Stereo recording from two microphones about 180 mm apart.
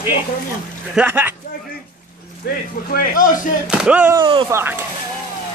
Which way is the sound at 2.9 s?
50° left (ahead or behind).